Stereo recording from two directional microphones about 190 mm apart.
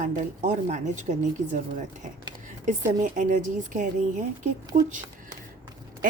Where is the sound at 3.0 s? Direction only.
40° right (ahead or behind).